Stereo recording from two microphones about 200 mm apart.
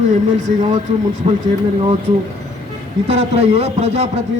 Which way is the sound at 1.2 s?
35° right (ahead or behind).